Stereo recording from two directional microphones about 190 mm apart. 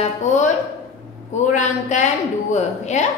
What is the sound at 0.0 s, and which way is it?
A woman's voice, 40° left (ahead or behind).